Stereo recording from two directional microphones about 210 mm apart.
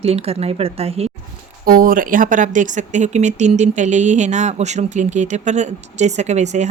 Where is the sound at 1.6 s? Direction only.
45° right (ahead or behind).